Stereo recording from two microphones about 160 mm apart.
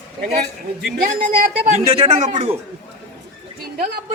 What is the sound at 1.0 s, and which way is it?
Speech, 55° right (ahead or behind).